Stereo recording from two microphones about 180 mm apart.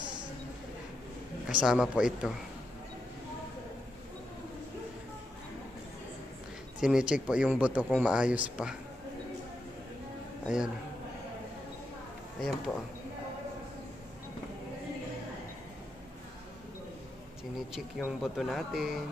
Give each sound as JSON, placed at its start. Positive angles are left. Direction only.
{"t": 1.5, "sound": "speech", "side_deg": -5}
{"t": 6.8, "sound": "speech", "side_deg": -5}
{"t": 12.4, "sound": "speech", "side_deg": 0}
{"t": 17.6, "sound": "speech", "side_deg": 0}